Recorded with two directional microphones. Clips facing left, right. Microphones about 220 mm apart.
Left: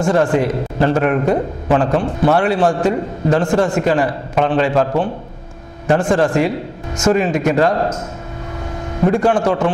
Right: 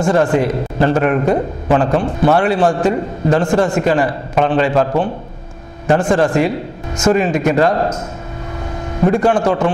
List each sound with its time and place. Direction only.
0.0 s a man's voice: 10° right (ahead or behind)
6.1 s a man's voice: 10° right (ahead or behind)
9.2 s a man's voice: 10° right (ahead or behind)